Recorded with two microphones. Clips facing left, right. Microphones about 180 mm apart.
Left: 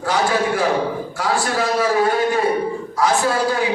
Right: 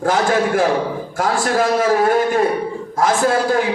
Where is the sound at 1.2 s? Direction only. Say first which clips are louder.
Right 4 dB; 50° right (ahead or behind).